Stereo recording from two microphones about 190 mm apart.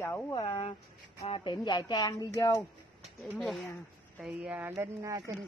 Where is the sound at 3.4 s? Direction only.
Centre (ahead or behind); by 5.3 s 20° right (ahead or behind).